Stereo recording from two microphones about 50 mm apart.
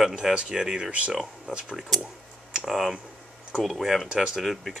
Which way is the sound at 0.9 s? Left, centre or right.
Right.